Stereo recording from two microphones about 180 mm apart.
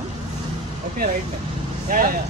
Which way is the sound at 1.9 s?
50° right (ahead or behind).